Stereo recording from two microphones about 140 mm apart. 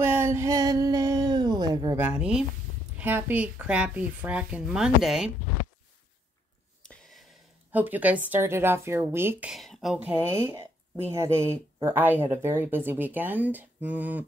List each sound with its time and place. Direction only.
0.0 s a sound: 15° right (ahead or behind)
2.0 s speech: 10° right (ahead or behind)
6.8 s a sound: 5° left (ahead or behind)
7.7 s speech: 10° right (ahead or behind)
9.5 s speech: centre (ahead or behind)
11.1 s speech: 20° right (ahead or behind)